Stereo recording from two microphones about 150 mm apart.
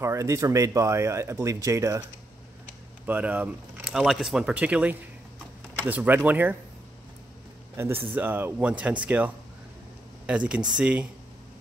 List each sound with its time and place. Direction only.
0.0 s speech: 20° right (ahead or behind)
3.1 s speech: 10° right (ahead or behind)
7.7 s speech: 15° right (ahead or behind)